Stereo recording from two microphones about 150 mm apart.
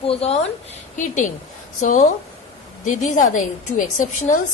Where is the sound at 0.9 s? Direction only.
55° left (ahead or behind).